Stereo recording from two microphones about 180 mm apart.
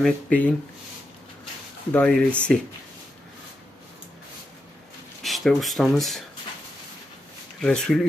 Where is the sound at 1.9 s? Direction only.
5° left (ahead or behind).